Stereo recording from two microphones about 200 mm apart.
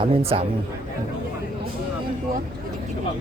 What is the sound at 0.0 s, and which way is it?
Speech, 30° right (ahead or behind).